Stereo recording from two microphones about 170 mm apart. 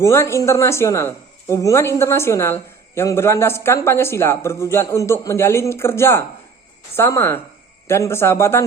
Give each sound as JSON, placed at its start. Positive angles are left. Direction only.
{"t": 0.0, "sound": "speech", "side_deg": 15}